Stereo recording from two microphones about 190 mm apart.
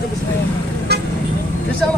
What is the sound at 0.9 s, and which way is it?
Vehicle, 55° right (ahead or behind).